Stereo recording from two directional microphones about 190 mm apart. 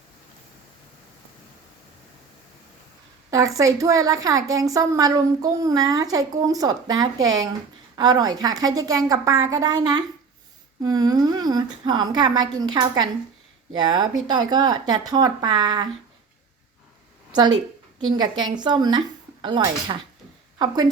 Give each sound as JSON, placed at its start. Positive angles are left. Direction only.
{"t": 3.2, "sound": "a woman's voice", "side_deg": -15}
{"t": 18.4, "sound": "a woman's voice", "side_deg": -20}